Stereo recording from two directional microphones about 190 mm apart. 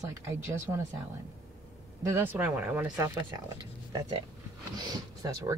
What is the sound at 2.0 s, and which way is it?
Speech, 10° right (ahead or behind).